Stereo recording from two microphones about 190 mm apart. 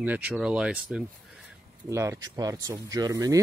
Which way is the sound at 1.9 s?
15° right (ahead or behind).